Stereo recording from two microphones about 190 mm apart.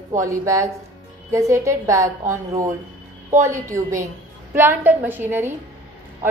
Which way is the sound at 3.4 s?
15° right (ahead or behind).